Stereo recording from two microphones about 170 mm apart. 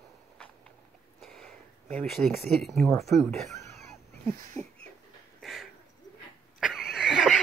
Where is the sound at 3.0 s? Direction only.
Centre (ahead or behind).